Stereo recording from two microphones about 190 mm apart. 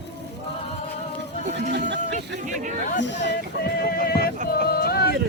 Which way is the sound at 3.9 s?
55° left (ahead or behind).